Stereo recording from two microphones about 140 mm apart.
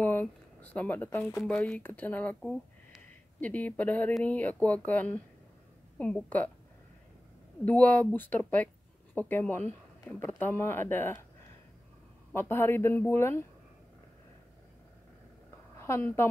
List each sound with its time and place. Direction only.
0.0 s speech: 10° left (ahead or behind)
7.6 s speech: 10° left (ahead or behind)
12.4 s speech: 15° left (ahead or behind)
15.8 s a woman's voice: 15° left (ahead or behind)